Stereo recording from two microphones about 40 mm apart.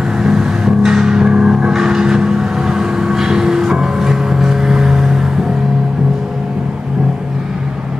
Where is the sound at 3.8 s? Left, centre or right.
Centre.